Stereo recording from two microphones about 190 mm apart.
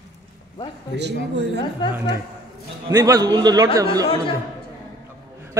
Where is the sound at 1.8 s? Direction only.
25° left (ahead or behind).